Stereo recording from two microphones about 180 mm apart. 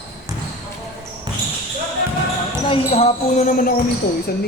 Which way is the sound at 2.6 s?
35° left (ahead or behind).